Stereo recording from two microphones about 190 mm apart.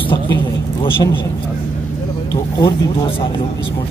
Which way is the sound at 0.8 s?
25° left (ahead or behind).